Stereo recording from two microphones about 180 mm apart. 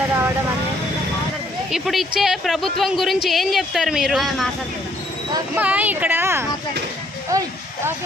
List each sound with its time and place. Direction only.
1.7 s speech: centre (ahead or behind)
5.5 s speech: 10° right (ahead or behind)